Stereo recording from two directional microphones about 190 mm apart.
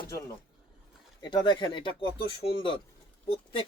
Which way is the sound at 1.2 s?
20° left (ahead or behind).